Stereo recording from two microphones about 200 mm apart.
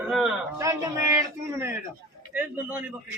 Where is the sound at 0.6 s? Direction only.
15° right (ahead or behind).